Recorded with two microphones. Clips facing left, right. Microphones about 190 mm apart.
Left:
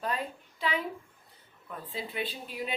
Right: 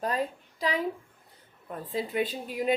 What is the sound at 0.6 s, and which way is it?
A woman's voice, 35° right (ahead or behind).